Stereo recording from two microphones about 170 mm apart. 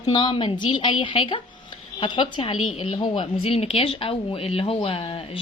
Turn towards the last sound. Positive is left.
turn(degrees=30)  # may be behind; listen again after turning